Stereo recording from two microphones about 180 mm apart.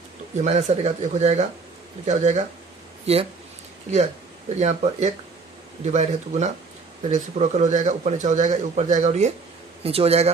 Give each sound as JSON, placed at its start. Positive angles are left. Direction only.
{"t": 0.4, "sound": "speech", "side_deg": -40}
{"t": 4.6, "sound": "speech", "side_deg": -40}